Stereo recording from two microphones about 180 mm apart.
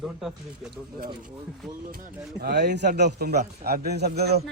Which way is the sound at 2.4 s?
65° right (ahead or behind).